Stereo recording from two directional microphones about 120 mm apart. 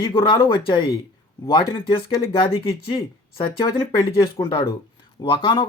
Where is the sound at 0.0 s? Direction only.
35° left (ahead or behind).